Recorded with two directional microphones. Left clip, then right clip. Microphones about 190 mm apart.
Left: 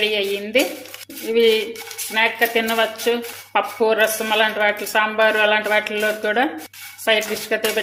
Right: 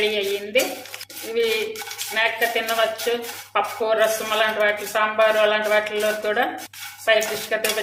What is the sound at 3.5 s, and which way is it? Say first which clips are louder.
A woman's voice: left 3 dB; 45° left (ahead or behind).